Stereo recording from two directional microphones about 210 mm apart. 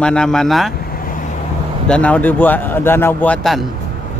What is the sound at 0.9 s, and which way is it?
Vehicle, 40° left (ahead or behind).